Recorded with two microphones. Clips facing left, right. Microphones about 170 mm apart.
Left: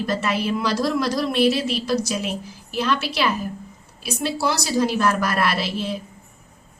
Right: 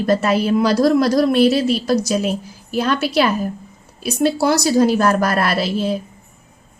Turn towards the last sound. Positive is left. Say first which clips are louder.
# right 5 dB
turn(degrees=-40)  # may be behind; listen again after turning